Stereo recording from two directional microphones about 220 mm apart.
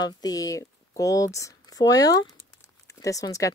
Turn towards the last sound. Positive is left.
turn(degrees=15)  # may be behind; listen again after turning